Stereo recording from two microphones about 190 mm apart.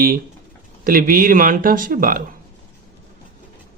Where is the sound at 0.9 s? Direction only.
50° right (ahead or behind).